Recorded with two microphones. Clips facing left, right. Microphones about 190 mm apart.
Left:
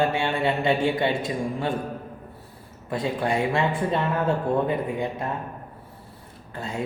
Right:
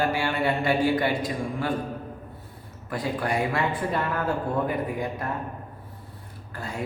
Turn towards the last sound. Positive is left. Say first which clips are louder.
# left 2 dB
turn(degrees=25)  # may be behind; listen again after turning